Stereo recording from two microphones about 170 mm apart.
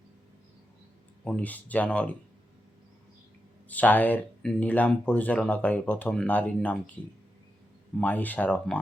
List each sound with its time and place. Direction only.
1.2 s speech: 5° left (ahead or behind)
3.7 s speech: 10° left (ahead or behind)
7.9 s speech: 10° left (ahead or behind)